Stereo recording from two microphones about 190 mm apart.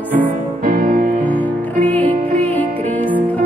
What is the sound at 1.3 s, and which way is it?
Music, 10° left (ahead or behind).